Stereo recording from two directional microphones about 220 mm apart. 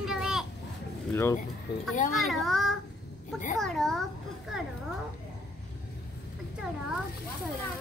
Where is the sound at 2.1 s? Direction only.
Centre (ahead or behind).